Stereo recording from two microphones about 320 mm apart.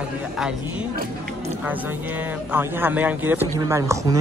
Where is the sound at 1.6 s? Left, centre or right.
Centre.